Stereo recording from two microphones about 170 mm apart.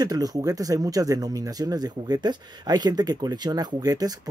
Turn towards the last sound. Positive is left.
turn(degrees=-20)  # may be behind; listen again after turning